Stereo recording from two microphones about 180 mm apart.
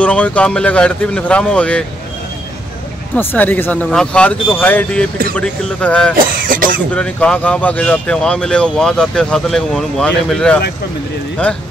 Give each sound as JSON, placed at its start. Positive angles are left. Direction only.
{"t": 0.0, "sound": "speech", "side_deg": 5}
{"t": 3.2, "sound": "speech", "side_deg": 10}
{"t": 6.4, "sound": "speech", "side_deg": -50}
{"t": 6.9, "sound": "speech", "side_deg": 5}